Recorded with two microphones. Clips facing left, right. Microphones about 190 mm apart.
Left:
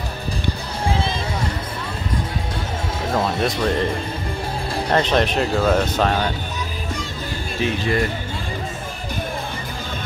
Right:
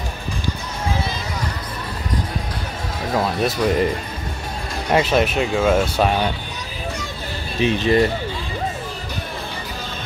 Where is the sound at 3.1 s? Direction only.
Centre (ahead or behind).